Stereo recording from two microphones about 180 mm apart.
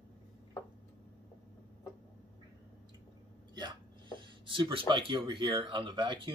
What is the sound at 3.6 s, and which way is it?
Speech, 25° right (ahead or behind).